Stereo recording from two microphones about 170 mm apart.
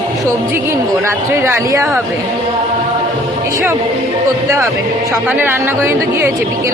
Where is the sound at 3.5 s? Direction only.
20° right (ahead or behind).